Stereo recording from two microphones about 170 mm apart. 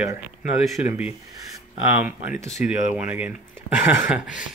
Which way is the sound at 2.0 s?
10° right (ahead or behind).